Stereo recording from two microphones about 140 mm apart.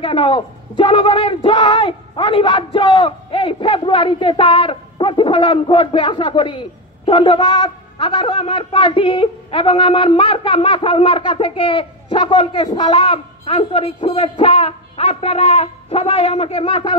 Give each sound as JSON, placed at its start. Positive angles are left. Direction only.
{"t": 0.0, "sound": "a man's voice", "side_deg": 40}